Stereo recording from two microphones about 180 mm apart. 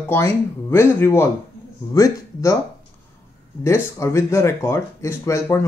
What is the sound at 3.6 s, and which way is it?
Speech, 15° left (ahead or behind).